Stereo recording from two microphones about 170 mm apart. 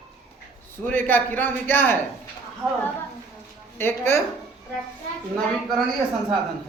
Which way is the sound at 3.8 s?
15° left (ahead or behind).